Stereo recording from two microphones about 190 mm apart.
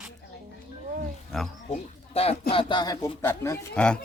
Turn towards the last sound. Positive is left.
turn(degrees=5)  # may be behind; listen again after turning